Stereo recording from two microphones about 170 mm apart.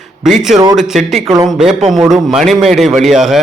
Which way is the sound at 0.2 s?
Centre (ahead or behind).